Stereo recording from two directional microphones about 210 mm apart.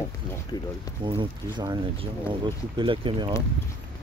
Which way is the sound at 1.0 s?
20° right (ahead or behind).